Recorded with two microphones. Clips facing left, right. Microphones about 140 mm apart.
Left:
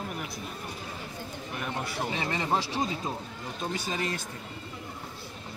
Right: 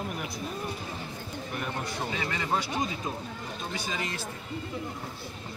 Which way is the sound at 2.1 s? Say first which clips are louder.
Left 2 dB; 25° left (ahead or behind).